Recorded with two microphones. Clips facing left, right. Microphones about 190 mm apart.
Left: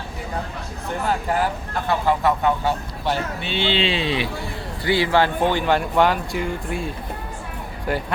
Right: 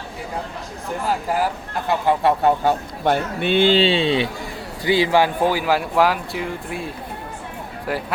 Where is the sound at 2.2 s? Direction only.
40° right (ahead or behind).